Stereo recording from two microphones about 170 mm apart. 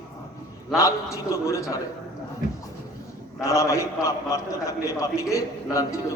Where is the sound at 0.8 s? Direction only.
20° left (ahead or behind).